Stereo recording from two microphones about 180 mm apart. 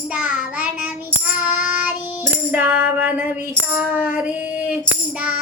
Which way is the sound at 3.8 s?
10° right (ahead or behind).